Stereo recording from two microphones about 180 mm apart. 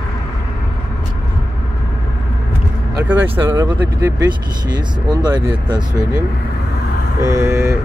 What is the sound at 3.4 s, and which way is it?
Speech, 20° right (ahead or behind).